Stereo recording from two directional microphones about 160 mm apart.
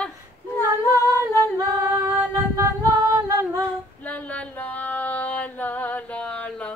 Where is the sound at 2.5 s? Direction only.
20° right (ahead or behind).